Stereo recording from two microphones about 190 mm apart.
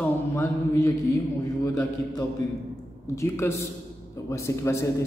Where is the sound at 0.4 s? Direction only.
15° left (ahead or behind).